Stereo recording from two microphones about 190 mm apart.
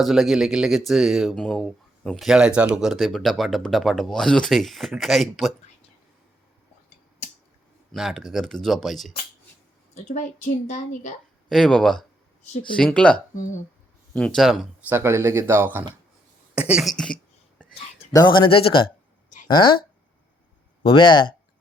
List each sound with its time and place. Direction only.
0.0 s speech: centre (ahead or behind)
7.9 s speech: centre (ahead or behind)
9.9 s a woman's voice: 40° left (ahead or behind)
11.4 s speech: 5° left (ahead or behind)
13.3 s a woman's voice: 40° left (ahead or behind)
14.1 s speech: 5° left (ahead or behind)
14.9 s speech: 15° right (ahead or behind)
18.1 s speech: 20° left (ahead or behind)
20.8 s speech: 25° left (ahead or behind)